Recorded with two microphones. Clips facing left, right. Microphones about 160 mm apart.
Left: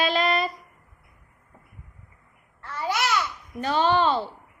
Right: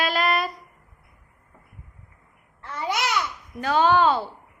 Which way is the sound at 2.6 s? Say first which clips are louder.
Even; 20° right (ahead or behind).